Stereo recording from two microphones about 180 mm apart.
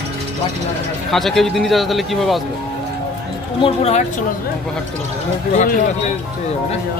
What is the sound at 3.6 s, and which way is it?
Speech, 35° left (ahead or behind).